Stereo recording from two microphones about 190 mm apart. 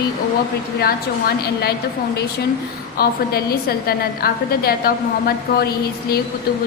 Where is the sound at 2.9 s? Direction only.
55° left (ahead or behind).